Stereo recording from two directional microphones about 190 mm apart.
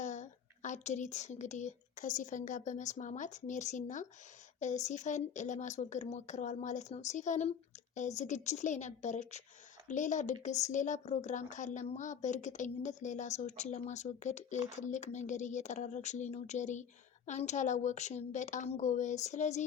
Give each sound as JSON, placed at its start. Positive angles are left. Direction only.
{"t": 0.0, "sound": "a woman's voice", "side_deg": 40}